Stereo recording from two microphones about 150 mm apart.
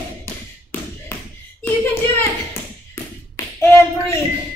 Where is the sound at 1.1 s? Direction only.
20° left (ahead or behind).